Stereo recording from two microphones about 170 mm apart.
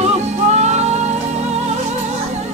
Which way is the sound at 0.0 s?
40° right (ahead or behind).